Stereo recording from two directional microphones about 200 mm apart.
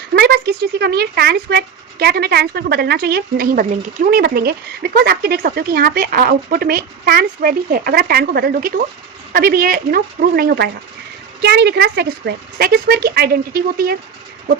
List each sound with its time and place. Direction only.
0.1 s speech: 55° right (ahead or behind)